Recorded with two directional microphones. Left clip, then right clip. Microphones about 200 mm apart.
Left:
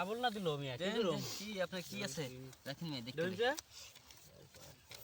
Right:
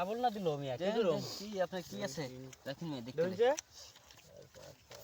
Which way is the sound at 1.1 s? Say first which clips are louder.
Right 5 dB; 50° left (ahead or behind).